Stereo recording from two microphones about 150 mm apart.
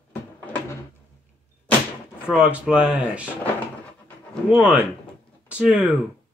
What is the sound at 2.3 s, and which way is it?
Speech, 5° right (ahead or behind).